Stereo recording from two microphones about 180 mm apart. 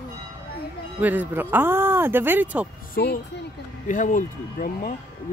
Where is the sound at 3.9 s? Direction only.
45° left (ahead or behind).